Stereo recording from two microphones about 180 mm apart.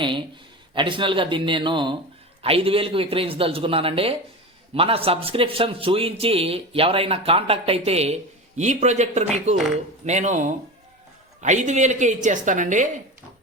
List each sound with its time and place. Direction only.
0.7 s a man's voice: 25° right (ahead or behind); by 12.9 s 45° right (ahead or behind)